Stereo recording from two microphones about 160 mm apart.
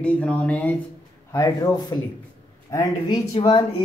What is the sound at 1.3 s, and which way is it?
Speech, 20° left (ahead or behind).